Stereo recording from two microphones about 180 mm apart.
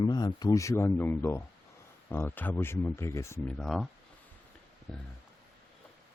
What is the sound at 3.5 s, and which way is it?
Speech, centre (ahead or behind).